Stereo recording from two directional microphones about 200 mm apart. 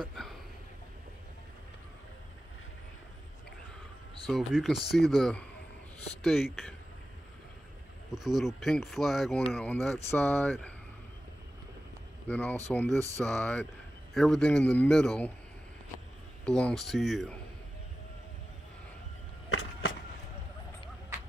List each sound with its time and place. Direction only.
0.0 s a sound: centre (ahead or behind)
4.3 s speech: centre (ahead or behind)
8.1 s speech: centre (ahead or behind)
12.3 s speech: 10° left (ahead or behind)
16.4 s speech: 5° left (ahead or behind)
19.5 s a sound: 90° left